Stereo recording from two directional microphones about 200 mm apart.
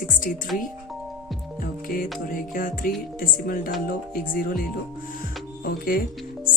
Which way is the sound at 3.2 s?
45° left (ahead or behind).